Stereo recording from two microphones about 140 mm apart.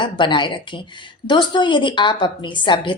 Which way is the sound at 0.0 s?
35° left (ahead or behind).